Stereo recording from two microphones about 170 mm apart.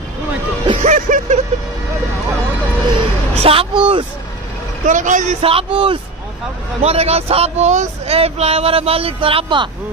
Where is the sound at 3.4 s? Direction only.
35° right (ahead or behind).